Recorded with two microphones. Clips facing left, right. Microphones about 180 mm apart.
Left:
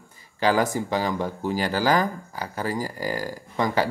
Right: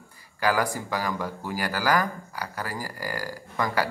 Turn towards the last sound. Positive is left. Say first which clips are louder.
# left 3 dB
turn(degrees=20)  # may be behind; listen again after turning